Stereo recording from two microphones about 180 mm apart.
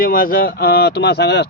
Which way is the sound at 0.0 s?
50° left (ahead or behind).